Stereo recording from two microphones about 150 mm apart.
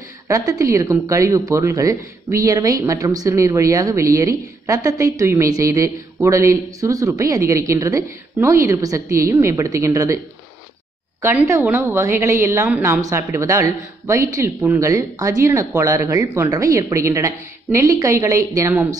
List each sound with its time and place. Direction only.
0.3 s a woman's voice: 20° right (ahead or behind)
11.2 s a woman's voice: 20° right (ahead or behind)